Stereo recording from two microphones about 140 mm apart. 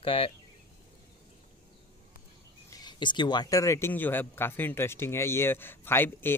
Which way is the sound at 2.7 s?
30° left (ahead or behind).